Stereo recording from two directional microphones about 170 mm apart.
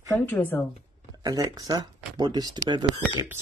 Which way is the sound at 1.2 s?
25° right (ahead or behind).